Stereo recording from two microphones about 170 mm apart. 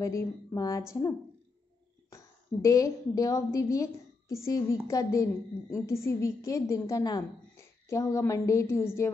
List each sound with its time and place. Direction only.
0.0 s a woman's voice: 20° left (ahead or behind)